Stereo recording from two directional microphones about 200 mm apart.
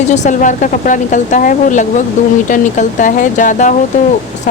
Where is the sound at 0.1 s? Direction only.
35° left (ahead or behind).